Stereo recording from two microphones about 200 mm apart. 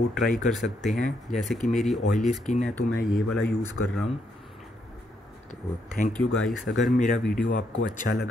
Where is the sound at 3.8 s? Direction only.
75° left (ahead or behind).